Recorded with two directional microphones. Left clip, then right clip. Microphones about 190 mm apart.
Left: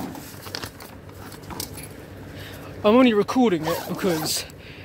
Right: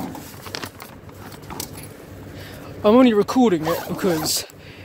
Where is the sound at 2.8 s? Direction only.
15° right (ahead or behind).